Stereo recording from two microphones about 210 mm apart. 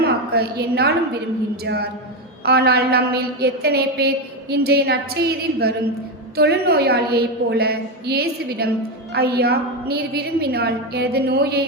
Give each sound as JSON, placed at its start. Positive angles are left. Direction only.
{"t": 0.0, "sound": "a woman's voice", "side_deg": -50}
{"t": 2.4, "sound": "a woman's voice", "side_deg": -50}